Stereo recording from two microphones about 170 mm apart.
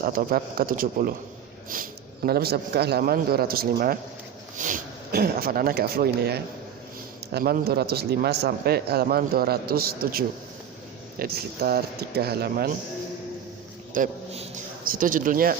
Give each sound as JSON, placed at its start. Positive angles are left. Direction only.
{"t": 0.0, "sound": "a man's voice", "side_deg": -55}
{"t": 4.5, "sound": "a man's voice", "side_deg": -50}
{"t": 13.9, "sound": "a man's voice", "side_deg": -50}